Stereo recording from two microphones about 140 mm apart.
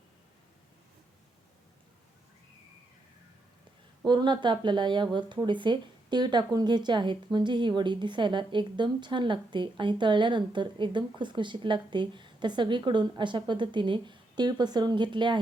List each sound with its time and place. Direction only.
4.0 s speech: 30° right (ahead or behind)